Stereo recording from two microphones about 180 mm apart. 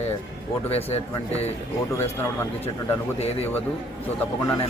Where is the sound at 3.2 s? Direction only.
35° left (ahead or behind).